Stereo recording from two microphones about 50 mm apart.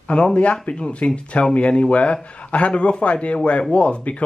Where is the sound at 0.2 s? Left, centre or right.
Left.